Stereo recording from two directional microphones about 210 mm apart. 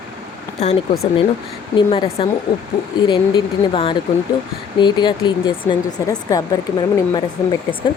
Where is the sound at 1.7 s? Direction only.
25° left (ahead or behind).